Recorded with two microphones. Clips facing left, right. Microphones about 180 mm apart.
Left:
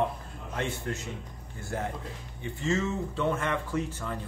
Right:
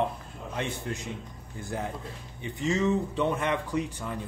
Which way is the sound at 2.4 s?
15° right (ahead or behind).